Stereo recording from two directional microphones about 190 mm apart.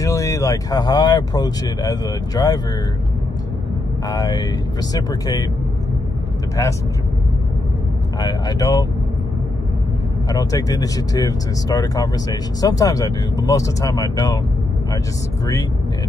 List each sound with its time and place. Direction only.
0.0 s speech: 15° left (ahead or behind)
4.1 s speech: 20° left (ahead or behind)
6.6 s speech: 15° left (ahead or behind)
8.2 s speech: 20° left (ahead or behind)
10.3 s speech: 20° left (ahead or behind)